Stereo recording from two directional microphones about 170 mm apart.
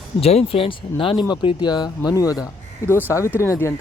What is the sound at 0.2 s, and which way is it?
Speech, 35° left (ahead or behind).